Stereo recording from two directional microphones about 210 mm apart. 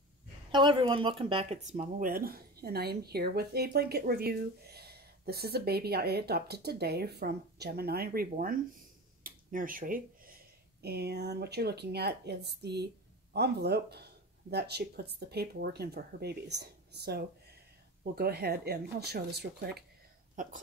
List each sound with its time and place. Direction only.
0.5 s speech: 20° right (ahead or behind); by 19.8 s 50° right (ahead or behind)